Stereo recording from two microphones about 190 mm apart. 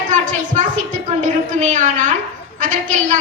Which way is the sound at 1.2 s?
40° right (ahead or behind).